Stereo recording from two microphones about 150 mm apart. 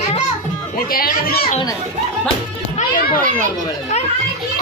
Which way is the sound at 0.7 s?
75° left (ahead or behind).